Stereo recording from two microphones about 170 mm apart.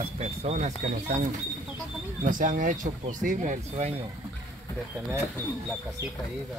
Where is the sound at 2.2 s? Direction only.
50° right (ahead or behind).